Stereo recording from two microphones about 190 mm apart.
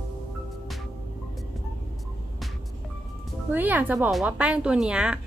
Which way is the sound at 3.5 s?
10° right (ahead or behind).